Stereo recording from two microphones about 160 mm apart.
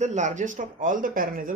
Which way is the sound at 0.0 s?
50° right (ahead or behind).